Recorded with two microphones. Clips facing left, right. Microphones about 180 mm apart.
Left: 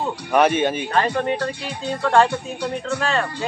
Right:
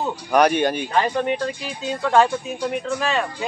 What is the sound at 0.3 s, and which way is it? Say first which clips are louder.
Speech: even; centre (ahead or behind).